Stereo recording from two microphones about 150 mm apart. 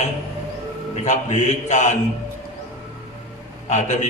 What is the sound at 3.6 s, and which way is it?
Speech, 50° left (ahead or behind).